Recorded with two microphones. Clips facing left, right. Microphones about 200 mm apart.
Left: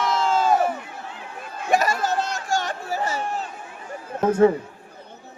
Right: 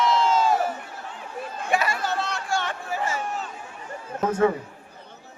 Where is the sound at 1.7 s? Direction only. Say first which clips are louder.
Left 4 dB; 40° left (ahead or behind).